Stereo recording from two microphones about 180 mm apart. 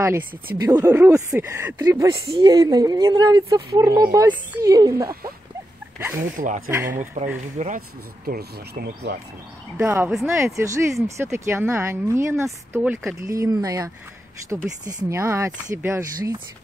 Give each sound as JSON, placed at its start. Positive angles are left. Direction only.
{"t": 0.6, "sound": "a woman's voice", "side_deg": -15}
{"t": 6.3, "sound": "speech", "side_deg": -45}
{"t": 6.7, "sound": "speech", "side_deg": -15}
{"t": 7.5, "sound": "speech", "side_deg": -40}
{"t": 8.3, "sound": "speech", "side_deg": -55}
{"t": 9.8, "sound": "speech", "side_deg": -10}